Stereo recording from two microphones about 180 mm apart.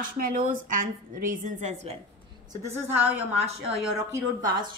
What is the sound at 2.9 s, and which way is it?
Speech, 10° right (ahead or behind).